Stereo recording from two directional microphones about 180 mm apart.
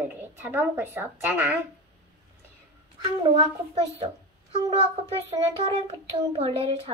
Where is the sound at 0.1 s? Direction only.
10° right (ahead or behind).